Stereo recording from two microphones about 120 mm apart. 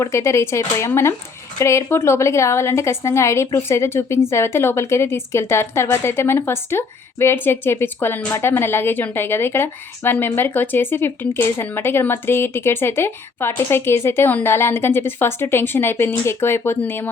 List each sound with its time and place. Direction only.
0.0 s speech: 25° left (ahead or behind)